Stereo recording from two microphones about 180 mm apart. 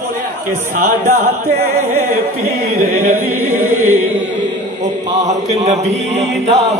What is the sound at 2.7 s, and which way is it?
Singing, 40° right (ahead or behind).